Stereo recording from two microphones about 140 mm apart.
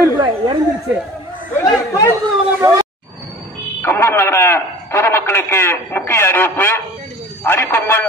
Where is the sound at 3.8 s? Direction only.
15° left (ahead or behind).